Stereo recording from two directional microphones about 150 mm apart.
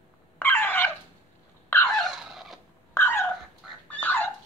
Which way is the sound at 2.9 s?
15° left (ahead or behind).